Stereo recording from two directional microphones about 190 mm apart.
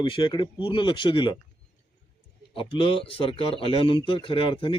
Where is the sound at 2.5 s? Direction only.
25° left (ahead or behind).